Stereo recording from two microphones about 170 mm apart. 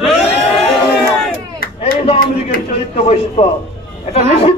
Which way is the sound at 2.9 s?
40° left (ahead or behind).